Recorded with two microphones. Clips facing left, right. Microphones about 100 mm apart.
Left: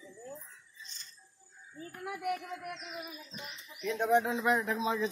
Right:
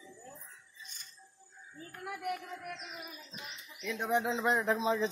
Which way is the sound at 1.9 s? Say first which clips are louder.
Left 2 dB; 10° left (ahead or behind).